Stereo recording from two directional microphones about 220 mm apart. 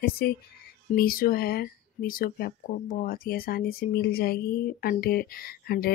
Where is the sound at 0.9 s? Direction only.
40° left (ahead or behind).